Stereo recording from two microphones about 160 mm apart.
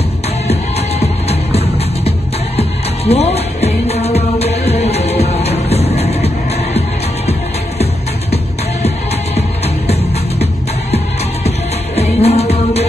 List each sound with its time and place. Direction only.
0.5 s music: 40° left (ahead or behind)
11.4 s music: 40° left (ahead or behind)